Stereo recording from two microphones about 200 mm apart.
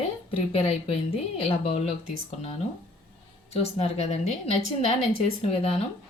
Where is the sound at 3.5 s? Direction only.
30° left (ahead or behind).